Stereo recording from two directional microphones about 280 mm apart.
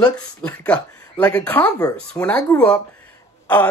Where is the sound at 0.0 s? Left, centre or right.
Centre.